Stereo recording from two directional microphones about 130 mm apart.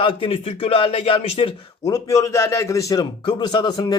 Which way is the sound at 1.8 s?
25° left (ahead or behind).